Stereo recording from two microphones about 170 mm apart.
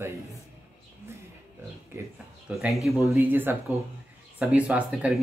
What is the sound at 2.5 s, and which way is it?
Speech, centre (ahead or behind).